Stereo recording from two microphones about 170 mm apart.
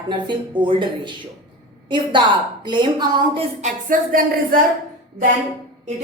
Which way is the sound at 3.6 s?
55° right (ahead or behind).